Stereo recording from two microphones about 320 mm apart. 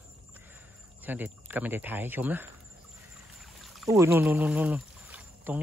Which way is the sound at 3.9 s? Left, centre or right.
Centre.